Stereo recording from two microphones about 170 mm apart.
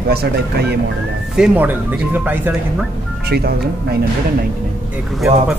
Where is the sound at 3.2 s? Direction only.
65° right (ahead or behind).